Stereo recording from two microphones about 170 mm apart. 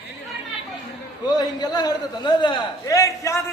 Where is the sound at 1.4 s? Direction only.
25° left (ahead or behind).